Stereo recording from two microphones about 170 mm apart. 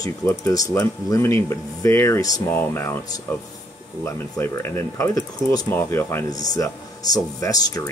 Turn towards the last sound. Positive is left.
turn(degrees=20)  # may be behind; listen again after turning